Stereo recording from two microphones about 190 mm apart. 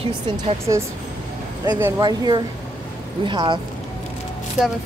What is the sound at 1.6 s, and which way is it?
A woman's voice, 15° right (ahead or behind).